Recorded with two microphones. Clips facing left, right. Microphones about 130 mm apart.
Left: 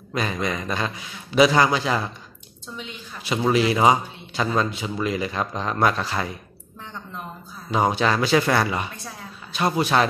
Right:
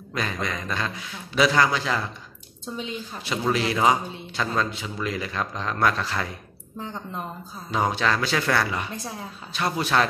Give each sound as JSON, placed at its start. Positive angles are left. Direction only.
{"t": 0.1, "sound": "a man's voice", "side_deg": 15}
{"t": 3.5, "sound": "a man's voice", "side_deg": 20}
{"t": 7.7, "sound": "a man's voice", "side_deg": 15}